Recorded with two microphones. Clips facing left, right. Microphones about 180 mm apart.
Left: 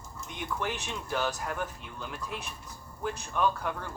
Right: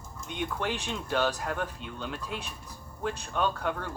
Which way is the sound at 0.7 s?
30° right (ahead or behind).